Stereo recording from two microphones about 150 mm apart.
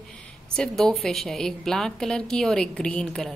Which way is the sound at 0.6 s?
5° left (ahead or behind).